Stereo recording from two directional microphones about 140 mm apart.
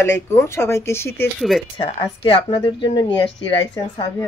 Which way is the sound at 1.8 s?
35° left (ahead or behind).